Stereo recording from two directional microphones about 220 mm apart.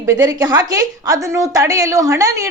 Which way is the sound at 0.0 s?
15° right (ahead or behind).